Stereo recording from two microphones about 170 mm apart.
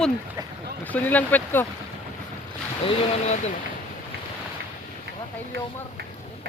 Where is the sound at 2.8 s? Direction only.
40° left (ahead or behind).